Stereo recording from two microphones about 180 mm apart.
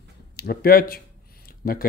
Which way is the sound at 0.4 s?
60° left (ahead or behind).